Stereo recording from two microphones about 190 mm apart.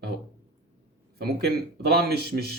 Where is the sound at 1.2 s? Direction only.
55° right (ahead or behind).